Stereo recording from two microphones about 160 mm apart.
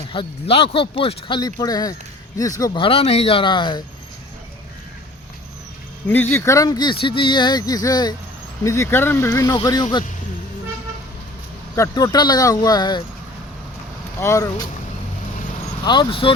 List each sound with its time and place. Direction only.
0.1 s speech: 35° left (ahead or behind)
2.8 s speech: 35° left (ahead or behind)
6.3 s speech: 20° left (ahead or behind)
11.8 s speech: 20° left (ahead or behind)
14.2 s speech: 15° left (ahead or behind)
15.8 s speech: 30° left (ahead or behind)